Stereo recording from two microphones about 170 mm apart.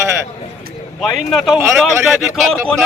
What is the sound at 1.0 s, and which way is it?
Speech, centre (ahead or behind).